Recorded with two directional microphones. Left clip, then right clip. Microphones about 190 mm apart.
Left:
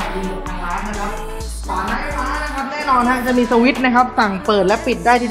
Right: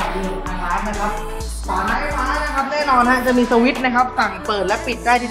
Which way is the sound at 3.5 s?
20° left (ahead or behind).